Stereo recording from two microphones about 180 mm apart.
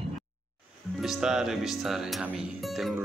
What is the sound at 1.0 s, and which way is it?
Speech, centre (ahead or behind).